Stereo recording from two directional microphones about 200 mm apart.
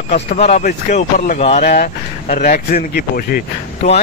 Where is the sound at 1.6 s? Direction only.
45° left (ahead or behind).